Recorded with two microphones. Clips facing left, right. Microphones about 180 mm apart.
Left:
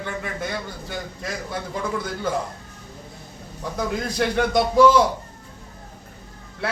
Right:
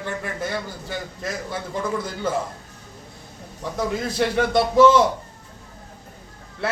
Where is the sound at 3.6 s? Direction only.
Centre (ahead or behind).